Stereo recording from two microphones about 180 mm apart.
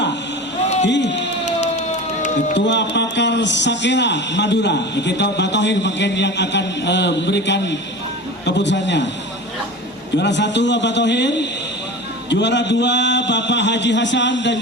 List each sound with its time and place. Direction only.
0.9 s crowd: 75° left (ahead or behind)
1.6 s emergency vehicle: 40° left (ahead or behind)
2.6 s a man's voice: 75° left (ahead or behind)
10.2 s a man's voice: 75° left (ahead or behind)